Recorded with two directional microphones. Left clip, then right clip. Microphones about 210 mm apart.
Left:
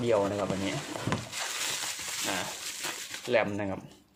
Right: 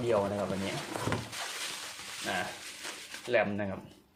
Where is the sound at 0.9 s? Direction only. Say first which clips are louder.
Right 1 dB; 5° left (ahead or behind).